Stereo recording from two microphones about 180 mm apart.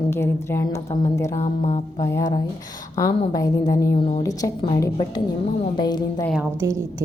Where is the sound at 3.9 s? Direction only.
30° left (ahead or behind).